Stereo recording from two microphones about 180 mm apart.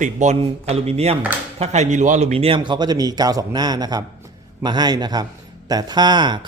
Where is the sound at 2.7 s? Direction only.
25° right (ahead or behind).